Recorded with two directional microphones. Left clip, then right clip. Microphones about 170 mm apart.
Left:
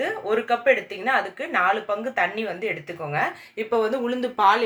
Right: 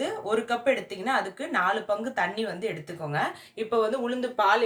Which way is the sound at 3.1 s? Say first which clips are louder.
Left 4 dB; 45° left (ahead or behind).